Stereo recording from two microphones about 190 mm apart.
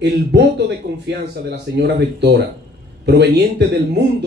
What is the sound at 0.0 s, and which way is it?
Speech, 65° right (ahead or behind).